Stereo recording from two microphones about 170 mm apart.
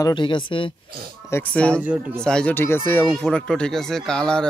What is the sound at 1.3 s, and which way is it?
Speech, 10° left (ahead or behind).